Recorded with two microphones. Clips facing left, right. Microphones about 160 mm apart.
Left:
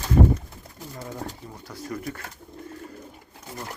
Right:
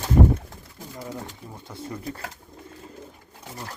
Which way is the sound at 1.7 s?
25° right (ahead or behind).